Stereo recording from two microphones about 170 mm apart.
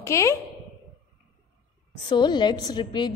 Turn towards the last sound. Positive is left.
turn(degrees=25)  # may be behind; listen again after turning